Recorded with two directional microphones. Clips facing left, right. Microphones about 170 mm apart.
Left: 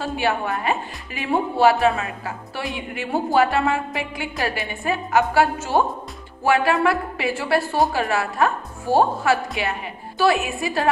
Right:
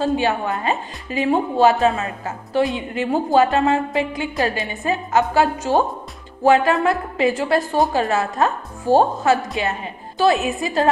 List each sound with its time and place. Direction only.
0.0 s a woman's voice: 20° right (ahead or behind)